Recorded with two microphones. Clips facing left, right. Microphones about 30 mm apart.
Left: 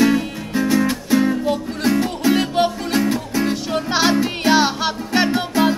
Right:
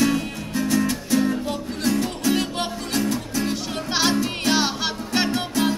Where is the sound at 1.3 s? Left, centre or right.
Centre.